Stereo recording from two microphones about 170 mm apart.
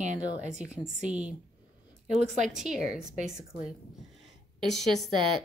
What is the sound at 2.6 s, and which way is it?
Speech, 5° right (ahead or behind).